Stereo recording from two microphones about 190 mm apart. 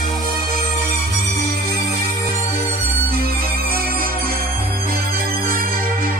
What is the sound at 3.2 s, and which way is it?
Music, 50° right (ahead or behind).